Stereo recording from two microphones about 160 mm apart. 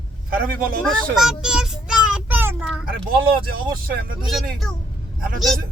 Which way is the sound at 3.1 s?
65° right (ahead or behind).